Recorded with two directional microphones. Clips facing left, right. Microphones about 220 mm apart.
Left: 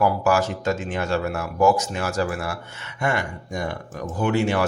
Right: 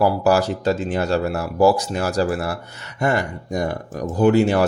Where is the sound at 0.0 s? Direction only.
35° right (ahead or behind).